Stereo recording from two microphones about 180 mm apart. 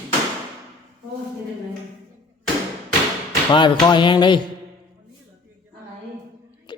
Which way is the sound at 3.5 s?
25° left (ahead or behind).